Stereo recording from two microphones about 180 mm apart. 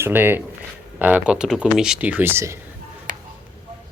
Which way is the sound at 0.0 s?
10° right (ahead or behind).